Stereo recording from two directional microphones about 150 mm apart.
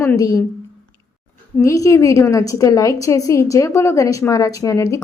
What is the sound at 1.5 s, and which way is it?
Speech, 20° left (ahead or behind).